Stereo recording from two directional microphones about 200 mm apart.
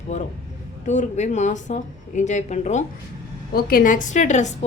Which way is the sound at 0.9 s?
35° left (ahead or behind).